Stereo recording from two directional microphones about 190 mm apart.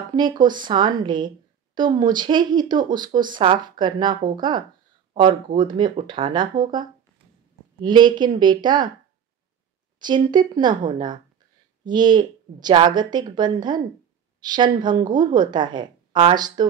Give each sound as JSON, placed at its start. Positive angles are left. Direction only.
{"t": 0.1, "sound": "speech", "side_deg": -20}
{"t": 7.8, "sound": "speech", "side_deg": -25}
{"t": 9.9, "sound": "speech", "side_deg": -25}